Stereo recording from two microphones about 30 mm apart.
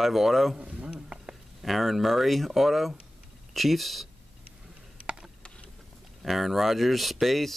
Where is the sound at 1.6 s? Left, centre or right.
Centre.